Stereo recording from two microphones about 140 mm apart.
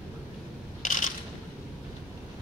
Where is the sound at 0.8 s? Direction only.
70° left (ahead or behind).